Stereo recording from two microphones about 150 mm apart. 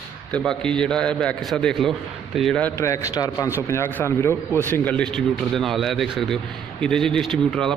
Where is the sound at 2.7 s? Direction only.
20° left (ahead or behind).